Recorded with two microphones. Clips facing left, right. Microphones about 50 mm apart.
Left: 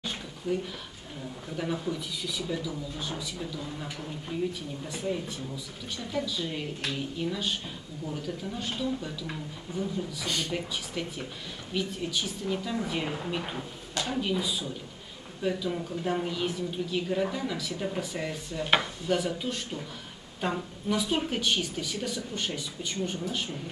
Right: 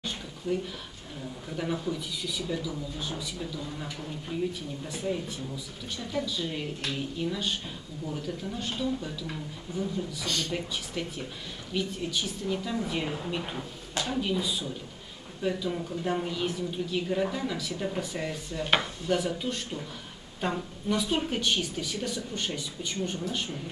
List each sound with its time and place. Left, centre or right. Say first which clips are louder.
0.5 s a woman's voice: even; centre
10.2 s speech: even; centre
10.5 s a woman's voice: even; centre